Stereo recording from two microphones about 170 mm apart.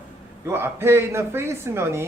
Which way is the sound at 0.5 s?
15° right (ahead or behind).